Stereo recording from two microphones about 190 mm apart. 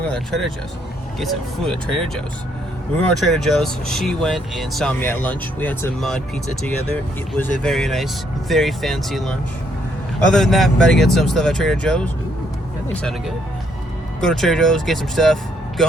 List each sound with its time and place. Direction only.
0.1 s speech: centre (ahead or behind)
3.1 s speech: centre (ahead or behind)